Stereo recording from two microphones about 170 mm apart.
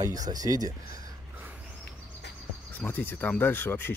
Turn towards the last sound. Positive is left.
turn(degrees=10)  # may be behind; listen again after turning